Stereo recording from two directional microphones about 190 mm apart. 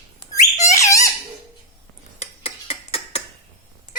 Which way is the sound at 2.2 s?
30° left (ahead or behind).